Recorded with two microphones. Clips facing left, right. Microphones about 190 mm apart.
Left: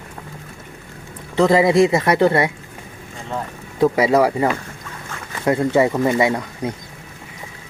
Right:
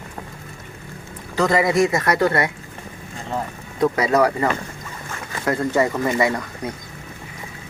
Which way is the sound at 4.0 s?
25° left (ahead or behind).